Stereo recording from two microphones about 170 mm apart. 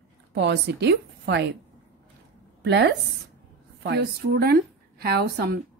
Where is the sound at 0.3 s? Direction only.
85° right.